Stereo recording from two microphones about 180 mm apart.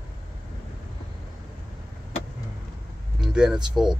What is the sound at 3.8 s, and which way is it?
Speech, 5° right (ahead or behind).